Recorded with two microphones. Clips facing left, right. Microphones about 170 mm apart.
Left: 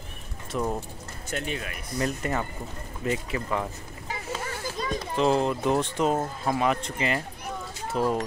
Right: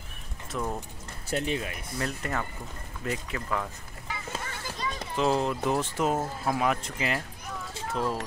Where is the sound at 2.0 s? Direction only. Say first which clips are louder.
Left 4 dB; 10° left (ahead or behind).